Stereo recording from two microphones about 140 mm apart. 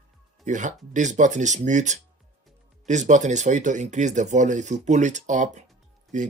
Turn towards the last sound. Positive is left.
turn(degrees=-60)  # may be behind; listen again after turning